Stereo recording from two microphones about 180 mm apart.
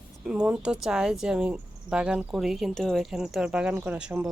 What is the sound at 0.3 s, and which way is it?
Speech, 5° right (ahead or behind).